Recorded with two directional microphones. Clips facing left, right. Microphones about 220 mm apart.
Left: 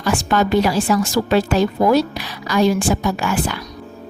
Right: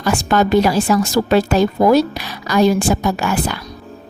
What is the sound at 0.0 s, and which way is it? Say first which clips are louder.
A woman's voice: right 2 dB; 45° right (ahead or behind).